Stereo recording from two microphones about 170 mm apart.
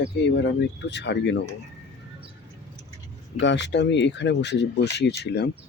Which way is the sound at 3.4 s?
90° left.